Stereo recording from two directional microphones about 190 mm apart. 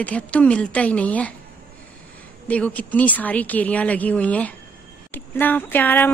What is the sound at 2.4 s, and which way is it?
A woman's voice, 5° left (ahead or behind).